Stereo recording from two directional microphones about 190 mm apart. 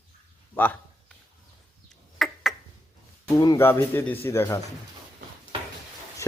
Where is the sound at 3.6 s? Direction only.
10° left (ahead or behind).